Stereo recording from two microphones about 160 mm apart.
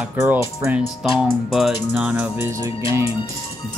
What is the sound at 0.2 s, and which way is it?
Music, 15° right (ahead or behind).